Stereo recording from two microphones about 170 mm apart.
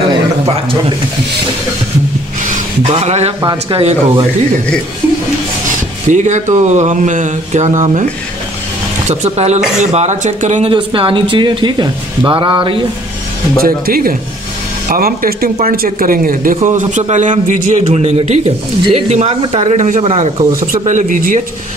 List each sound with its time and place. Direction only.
2.9 s speech: 40° right (ahead or behind)
5.7 s speech: 50° right (ahead or behind)
9.0 s speech: 40° right (ahead or behind)
10.7 s speech: 30° right (ahead or behind)
13.6 s a man's voice: 60° right (ahead or behind)
17.8 s speech: 35° right (ahead or behind); by 21.4 s 50° right (ahead or behind)